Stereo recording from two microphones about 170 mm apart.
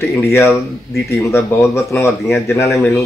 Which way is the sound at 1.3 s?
15° left (ahead or behind).